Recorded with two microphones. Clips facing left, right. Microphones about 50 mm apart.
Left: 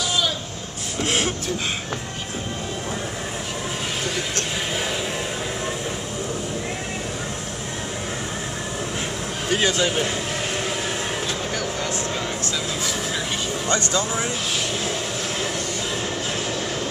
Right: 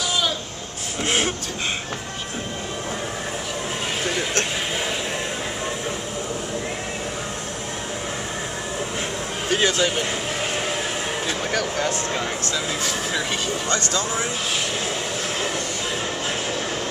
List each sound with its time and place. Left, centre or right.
1.0 s speech: centre
9.5 s speech: centre
13.7 s speech: left